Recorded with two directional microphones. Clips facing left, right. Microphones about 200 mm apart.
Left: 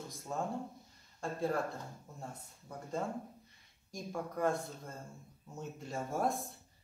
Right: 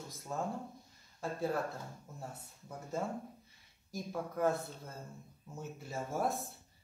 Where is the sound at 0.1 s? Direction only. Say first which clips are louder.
Even; centre (ahead or behind).